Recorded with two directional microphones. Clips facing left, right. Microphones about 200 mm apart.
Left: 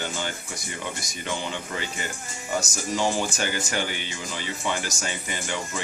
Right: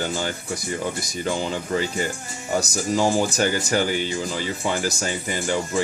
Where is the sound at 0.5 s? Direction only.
35° right (ahead or behind).